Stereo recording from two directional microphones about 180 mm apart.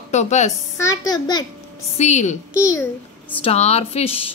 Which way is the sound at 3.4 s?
35° left (ahead or behind).